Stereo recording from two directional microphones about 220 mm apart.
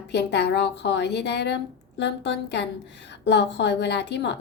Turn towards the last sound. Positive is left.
turn(degrees=50)  # may be behind; listen again after turning